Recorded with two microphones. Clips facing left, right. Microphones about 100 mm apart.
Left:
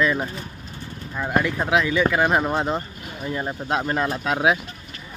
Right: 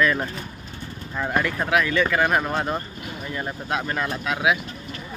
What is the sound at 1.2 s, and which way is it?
Speech, 15° left (ahead or behind).